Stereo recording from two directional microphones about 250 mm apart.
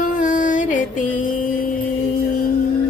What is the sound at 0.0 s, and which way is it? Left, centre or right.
Music, left.